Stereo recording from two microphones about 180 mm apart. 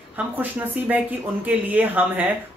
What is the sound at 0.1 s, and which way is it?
Speech, 10° right (ahead or behind).